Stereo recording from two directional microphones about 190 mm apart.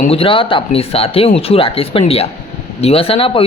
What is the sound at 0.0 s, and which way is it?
A man's voice, 30° left (ahead or behind).